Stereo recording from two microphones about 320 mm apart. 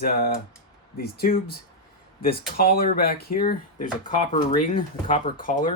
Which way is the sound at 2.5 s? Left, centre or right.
Left.